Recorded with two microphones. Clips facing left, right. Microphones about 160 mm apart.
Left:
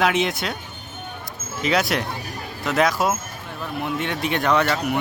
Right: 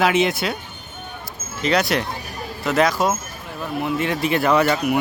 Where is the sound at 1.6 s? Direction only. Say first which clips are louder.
Right 2 dB; centre (ahead or behind).